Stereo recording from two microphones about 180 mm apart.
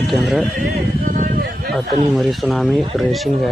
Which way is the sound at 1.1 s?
45° right (ahead or behind).